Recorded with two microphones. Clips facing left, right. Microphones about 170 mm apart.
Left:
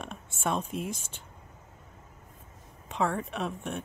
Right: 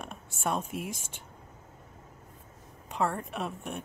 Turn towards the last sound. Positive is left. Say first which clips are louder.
# left 2 dB
turn(degrees=-5)  # may be behind; listen again after turning